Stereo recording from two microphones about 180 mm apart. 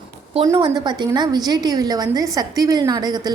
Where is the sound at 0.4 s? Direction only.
20° right (ahead or behind).